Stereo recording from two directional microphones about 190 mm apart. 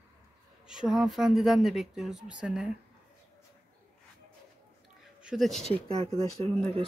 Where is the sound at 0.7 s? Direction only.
5° right (ahead or behind).